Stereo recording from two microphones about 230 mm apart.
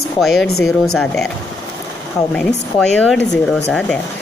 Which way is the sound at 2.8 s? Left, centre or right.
Centre.